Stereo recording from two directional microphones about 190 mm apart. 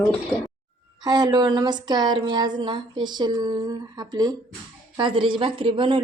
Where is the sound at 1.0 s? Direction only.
20° right (ahead or behind).